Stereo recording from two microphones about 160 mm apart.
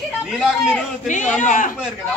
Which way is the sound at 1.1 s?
50° left (ahead or behind).